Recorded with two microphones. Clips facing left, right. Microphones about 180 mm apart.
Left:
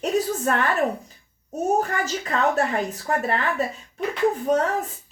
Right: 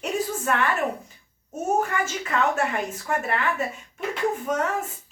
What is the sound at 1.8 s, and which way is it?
A child's voice, 35° left (ahead or behind).